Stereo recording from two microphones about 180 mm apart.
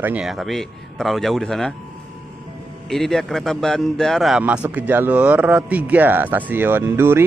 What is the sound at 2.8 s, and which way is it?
A man's voice, centre (ahead or behind).